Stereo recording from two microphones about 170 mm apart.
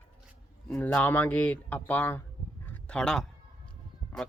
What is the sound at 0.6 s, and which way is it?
Speech, 10° left (ahead or behind).